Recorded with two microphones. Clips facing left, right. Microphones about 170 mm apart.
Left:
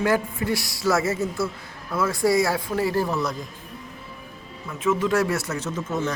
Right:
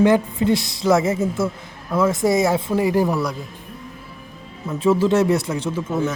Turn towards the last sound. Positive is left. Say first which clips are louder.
# right 4 dB
turn(degrees=-10)  # may be behind; listen again after turning